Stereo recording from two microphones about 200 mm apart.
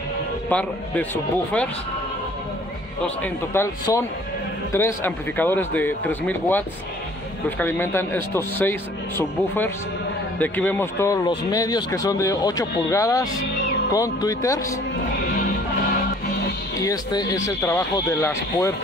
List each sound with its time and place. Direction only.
0.5 s a man's voice: 5° left (ahead or behind)
3.2 s a man's voice: 15° left (ahead or behind)
16.8 s a man's voice: 20° left (ahead or behind)